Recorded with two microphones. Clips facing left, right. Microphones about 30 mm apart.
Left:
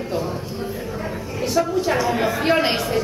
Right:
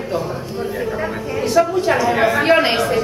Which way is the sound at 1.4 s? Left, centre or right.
Centre.